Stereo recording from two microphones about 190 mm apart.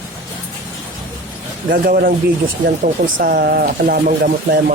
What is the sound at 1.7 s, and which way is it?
Speech, 50° right (ahead or behind).